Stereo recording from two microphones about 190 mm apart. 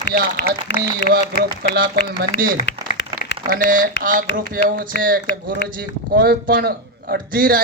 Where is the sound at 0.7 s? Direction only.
65° left (ahead or behind).